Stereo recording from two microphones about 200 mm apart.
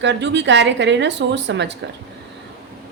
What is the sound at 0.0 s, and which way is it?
A woman's voice, 60° right (ahead or behind).